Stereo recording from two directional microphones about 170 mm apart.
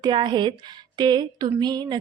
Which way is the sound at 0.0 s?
25° right (ahead or behind).